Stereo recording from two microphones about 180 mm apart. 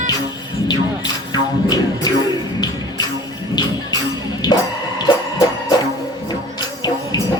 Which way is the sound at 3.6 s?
25° left (ahead or behind).